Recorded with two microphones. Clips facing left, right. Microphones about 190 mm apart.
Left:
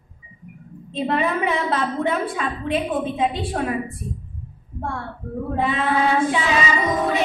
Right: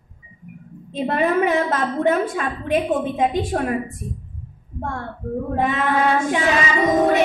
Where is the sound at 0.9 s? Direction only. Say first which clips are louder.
Right 3 dB; 45° right (ahead or behind).